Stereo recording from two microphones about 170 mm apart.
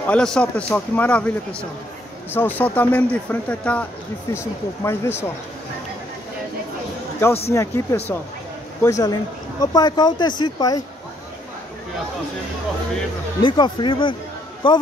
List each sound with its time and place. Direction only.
0.0 s a man's voice: 5° left (ahead or behind)
7.2 s a man's voice: 15° left (ahead or behind)
13.4 s speech: 30° left (ahead or behind)